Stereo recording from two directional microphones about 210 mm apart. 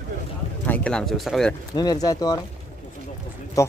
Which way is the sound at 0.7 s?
5° left (ahead or behind).